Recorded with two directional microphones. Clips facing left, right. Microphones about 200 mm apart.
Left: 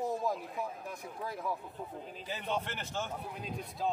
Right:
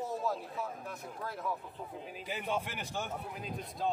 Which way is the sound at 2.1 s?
10° right (ahead or behind).